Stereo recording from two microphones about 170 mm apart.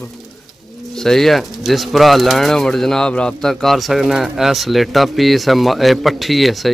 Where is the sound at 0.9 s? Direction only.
Centre (ahead or behind).